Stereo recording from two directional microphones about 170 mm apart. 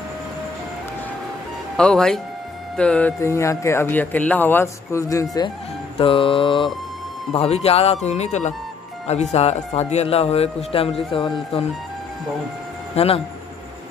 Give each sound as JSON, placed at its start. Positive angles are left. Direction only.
{"t": 1.8, "sound": "speech", "side_deg": 5}
{"t": 5.9, "sound": "a man's voice", "side_deg": 30}
{"t": 12.9, "sound": "speech", "side_deg": 35}